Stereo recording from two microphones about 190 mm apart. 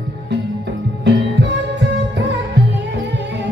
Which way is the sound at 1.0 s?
65° right (ahead or behind).